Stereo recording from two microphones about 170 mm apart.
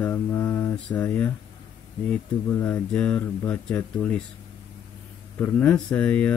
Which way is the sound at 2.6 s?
10° left (ahead or behind).